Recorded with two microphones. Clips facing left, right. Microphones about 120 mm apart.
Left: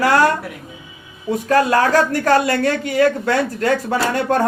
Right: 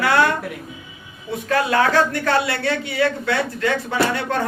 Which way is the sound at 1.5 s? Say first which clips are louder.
Left 3 dB; 40° left (ahead or behind).